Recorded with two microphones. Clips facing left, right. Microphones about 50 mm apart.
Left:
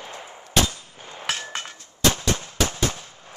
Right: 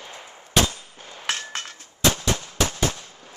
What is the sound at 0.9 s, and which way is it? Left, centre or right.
Gunshot, centre.